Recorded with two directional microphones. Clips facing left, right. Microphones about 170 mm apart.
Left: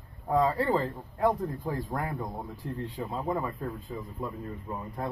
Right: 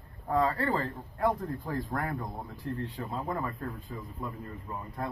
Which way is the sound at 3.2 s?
15° left (ahead or behind).